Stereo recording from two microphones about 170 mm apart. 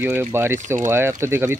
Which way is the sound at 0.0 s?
15° right (ahead or behind).